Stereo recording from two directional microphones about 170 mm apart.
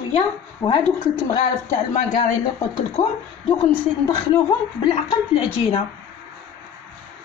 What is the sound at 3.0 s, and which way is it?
Speech, 45° left (ahead or behind).